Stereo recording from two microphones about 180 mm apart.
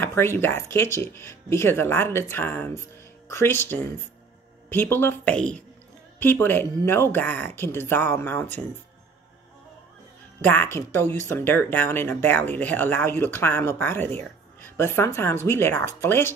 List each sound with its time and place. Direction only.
0.0 s speech: 15° left (ahead or behind)
10.4 s speech: 10° left (ahead or behind)